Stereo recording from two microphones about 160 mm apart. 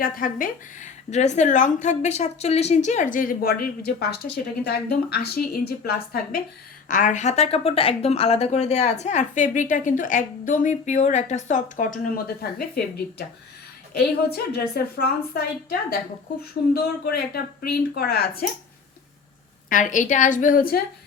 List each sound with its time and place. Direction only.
0.0 s a woman's voice: 60° left (ahead or behind)
6.8 s speech: 55° left (ahead or behind)
13.9 s a woman's voice: 80° left
16.7 s a woman's voice: 70° left (ahead or behind)
19.7 s speech: 50° left (ahead or behind)